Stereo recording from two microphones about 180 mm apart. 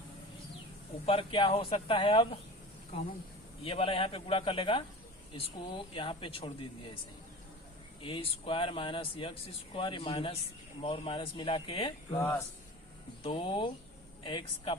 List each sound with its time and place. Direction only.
1.0 s speech: 30° left (ahead or behind)
3.6 s speech: 30° left (ahead or behind)
8.0 s speech: 30° left (ahead or behind)
12.2 s speech: 10° left (ahead or behind)
13.2 s speech: 30° left (ahead or behind)